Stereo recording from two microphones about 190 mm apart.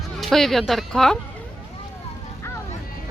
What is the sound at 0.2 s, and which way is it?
Speech, centre (ahead or behind).